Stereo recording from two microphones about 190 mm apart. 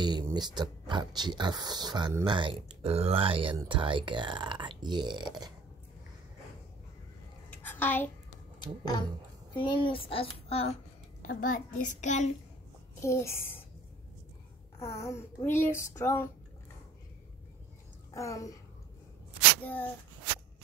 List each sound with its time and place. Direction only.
0.0 s speech: 20° right (ahead or behind)
7.6 s a sound: 10° left (ahead or behind)
9.6 s a child's voice: 25° left (ahead or behind)
11.2 s a child's voice: 45° left (ahead or behind)
13.0 s speech: 15° left (ahead or behind)
14.8 s speech: 15° left (ahead or behind)
18.1 s speech: 15° left (ahead or behind)
19.6 s speech: 10° left (ahead or behind)